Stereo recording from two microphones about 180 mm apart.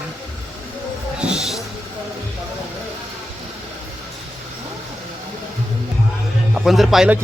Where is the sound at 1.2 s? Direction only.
5° right (ahead or behind).